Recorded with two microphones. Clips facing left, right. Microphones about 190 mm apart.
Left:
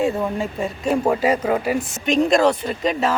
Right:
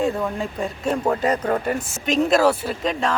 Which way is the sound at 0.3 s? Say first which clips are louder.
Left 2 dB; 5° left (ahead or behind).